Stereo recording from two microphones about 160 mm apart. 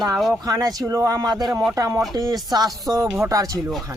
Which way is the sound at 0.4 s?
20° right (ahead or behind).